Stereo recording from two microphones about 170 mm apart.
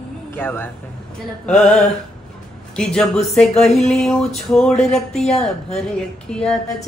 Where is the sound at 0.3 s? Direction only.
10° left (ahead or behind).